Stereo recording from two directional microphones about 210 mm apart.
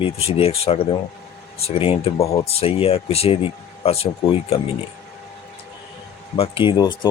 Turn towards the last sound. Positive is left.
turn(degrees=20)  # may be behind; listen again after turning